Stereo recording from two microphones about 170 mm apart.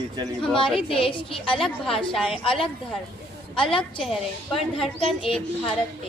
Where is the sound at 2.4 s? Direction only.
30° left (ahead or behind).